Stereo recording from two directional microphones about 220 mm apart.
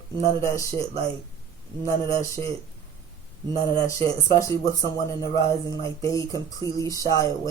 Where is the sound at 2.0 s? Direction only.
15° left (ahead or behind).